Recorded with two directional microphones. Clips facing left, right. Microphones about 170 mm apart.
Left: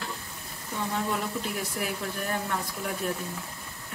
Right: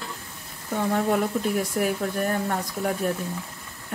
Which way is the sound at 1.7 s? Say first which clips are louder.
Right 7 dB; 45° right (ahead or behind).